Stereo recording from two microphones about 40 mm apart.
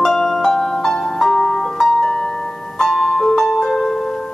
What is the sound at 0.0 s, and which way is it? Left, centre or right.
Music, centre.